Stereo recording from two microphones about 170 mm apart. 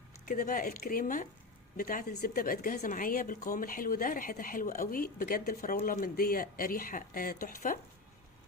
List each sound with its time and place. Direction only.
0.3 s speech: 50° left (ahead or behind)